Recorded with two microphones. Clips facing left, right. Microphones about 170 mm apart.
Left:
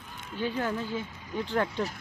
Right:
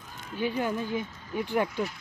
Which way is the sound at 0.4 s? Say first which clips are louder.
Right 2 dB; 15° right (ahead or behind).